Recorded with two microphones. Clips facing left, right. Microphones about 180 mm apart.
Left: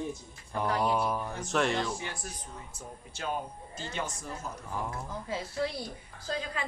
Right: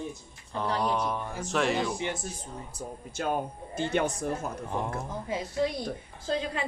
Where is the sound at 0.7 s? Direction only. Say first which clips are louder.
Even; 5° left (ahead or behind).